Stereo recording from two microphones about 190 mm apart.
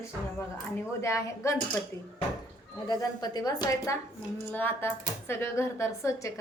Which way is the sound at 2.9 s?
20° left (ahead or behind).